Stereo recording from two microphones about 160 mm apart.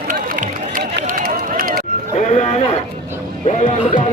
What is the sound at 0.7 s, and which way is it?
Run, 60° right (ahead or behind).